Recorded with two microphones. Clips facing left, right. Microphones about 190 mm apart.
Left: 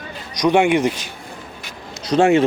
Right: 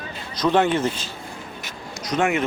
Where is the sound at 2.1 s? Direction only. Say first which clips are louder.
Left 8 dB; 30° left (ahead or behind).